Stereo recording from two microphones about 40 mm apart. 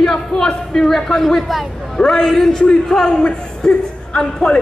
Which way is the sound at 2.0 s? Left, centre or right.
Centre.